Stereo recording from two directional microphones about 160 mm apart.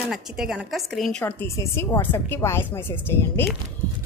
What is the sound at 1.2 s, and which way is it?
A woman's voice, 15° left (ahead or behind).